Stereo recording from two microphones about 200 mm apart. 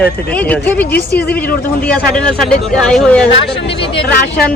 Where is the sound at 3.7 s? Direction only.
25° left (ahead or behind).